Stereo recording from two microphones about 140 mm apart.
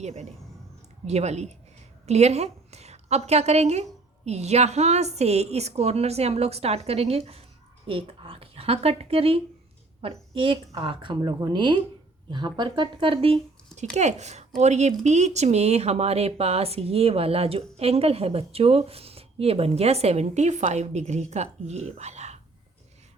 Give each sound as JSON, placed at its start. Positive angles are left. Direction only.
{"t": 0.0, "sound": "a woman's voice", "side_deg": -50}
{"t": 13.9, "sound": "speech", "side_deg": -55}